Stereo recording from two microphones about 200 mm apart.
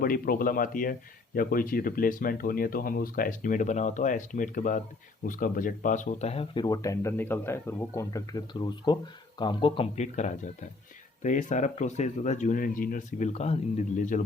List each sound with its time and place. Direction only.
0.0 s speech: 45° left (ahead or behind)